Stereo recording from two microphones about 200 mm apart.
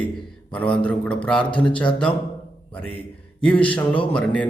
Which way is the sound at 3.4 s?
5° left (ahead or behind).